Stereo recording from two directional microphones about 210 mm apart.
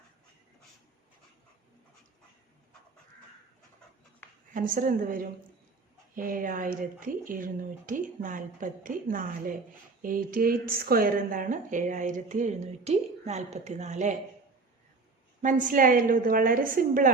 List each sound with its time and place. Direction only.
4.5 s a woman's voice: 40° right (ahead or behind)
15.4 s a woman's voice: 40° right (ahead or behind)